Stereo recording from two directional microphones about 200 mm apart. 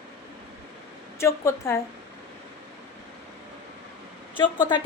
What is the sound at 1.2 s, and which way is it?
Speech, 15° left (ahead or behind).